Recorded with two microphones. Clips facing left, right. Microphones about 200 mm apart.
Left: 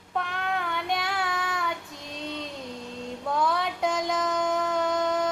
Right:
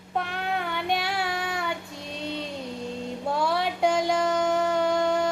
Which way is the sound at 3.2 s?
30° right (ahead or behind).